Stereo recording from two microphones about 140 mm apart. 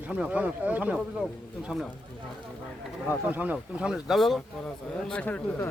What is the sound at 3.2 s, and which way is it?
Speech, 10° right (ahead or behind).